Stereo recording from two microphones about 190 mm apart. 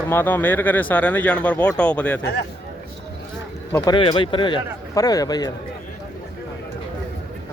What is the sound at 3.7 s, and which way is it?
Speech, 15° left (ahead or behind).